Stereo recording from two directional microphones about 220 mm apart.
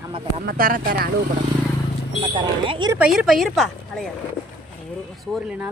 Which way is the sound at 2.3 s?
20° right (ahead or behind).